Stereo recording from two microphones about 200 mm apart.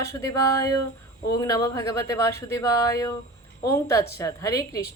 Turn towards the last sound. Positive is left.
turn(degrees=15)  # may be behind; listen again after turning